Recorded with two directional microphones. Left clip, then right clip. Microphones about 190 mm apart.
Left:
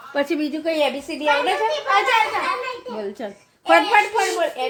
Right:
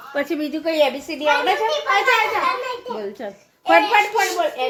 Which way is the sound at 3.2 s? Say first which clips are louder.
Right 1 dB; 30° left (ahead or behind).